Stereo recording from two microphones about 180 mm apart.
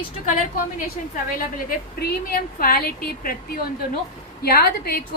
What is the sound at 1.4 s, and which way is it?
A woman's voice, 55° left (ahead or behind).